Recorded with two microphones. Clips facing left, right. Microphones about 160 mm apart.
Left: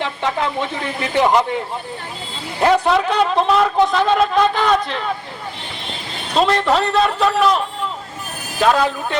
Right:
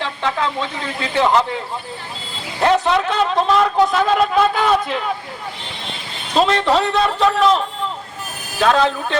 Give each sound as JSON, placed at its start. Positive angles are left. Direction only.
{"t": 0.0, "sound": "speech", "side_deg": 20}
{"t": 2.6, "sound": "speech", "side_deg": 5}
{"t": 6.3, "sound": "speech", "side_deg": 0}
{"t": 8.6, "sound": "speech", "side_deg": 10}